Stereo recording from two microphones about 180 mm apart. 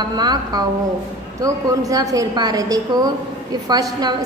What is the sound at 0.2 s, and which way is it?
A woman's voice, 20° right (ahead or behind).